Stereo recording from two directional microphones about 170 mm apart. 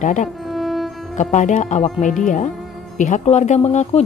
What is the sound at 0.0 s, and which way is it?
Speech, 45° left (ahead or behind).